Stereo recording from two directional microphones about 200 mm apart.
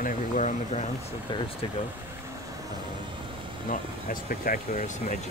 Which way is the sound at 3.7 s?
45° left (ahead or behind).